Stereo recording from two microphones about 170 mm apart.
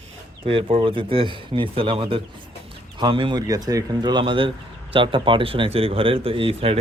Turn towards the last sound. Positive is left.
turn(degrees=-35)  # may be behind; listen again after turning